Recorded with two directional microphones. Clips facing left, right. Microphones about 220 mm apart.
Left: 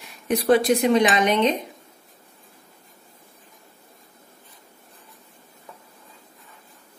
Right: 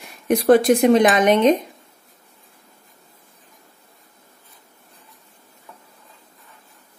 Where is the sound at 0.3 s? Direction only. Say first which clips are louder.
Right 4 dB; 50° right (ahead or behind).